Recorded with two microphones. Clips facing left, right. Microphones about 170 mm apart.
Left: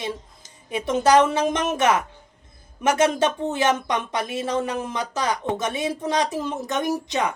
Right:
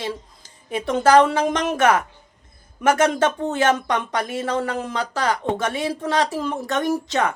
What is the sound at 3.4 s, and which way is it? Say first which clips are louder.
A woman's voice: right 2 dB; 20° left (ahead or behind).